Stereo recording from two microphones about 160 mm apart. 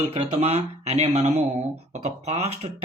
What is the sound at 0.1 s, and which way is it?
Speech, 40° right (ahead or behind).